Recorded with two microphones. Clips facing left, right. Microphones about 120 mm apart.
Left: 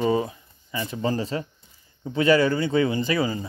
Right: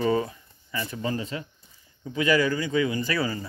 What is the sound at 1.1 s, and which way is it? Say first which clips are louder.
Speech: left 4 dB; 35° left (ahead or behind).